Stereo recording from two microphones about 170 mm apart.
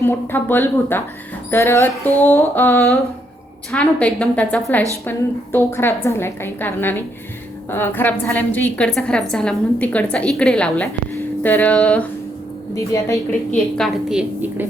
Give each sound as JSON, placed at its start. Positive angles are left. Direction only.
{"t": 0.0, "sound": "a woman's voice", "side_deg": 10}
{"t": 12.7, "sound": "a woman's voice", "side_deg": 20}
{"t": 13.5, "sound": "a woman's voice", "side_deg": 0}